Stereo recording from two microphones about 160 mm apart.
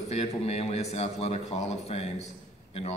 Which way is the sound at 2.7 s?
40° left (ahead or behind).